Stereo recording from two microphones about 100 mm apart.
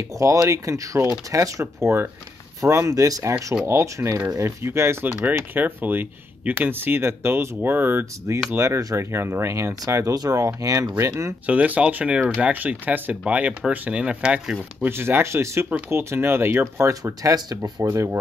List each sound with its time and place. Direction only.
0.2 s speech: 35° right (ahead or behind)
11.4 s speech: 15° right (ahead or behind)
14.9 s speech: 25° right (ahead or behind)
17.0 s speech: 35° right (ahead or behind)